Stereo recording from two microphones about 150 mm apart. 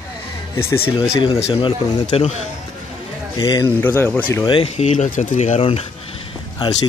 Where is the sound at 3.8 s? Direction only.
15° left (ahead or behind).